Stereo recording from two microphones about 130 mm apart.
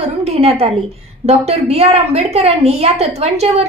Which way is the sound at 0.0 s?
55° right (ahead or behind).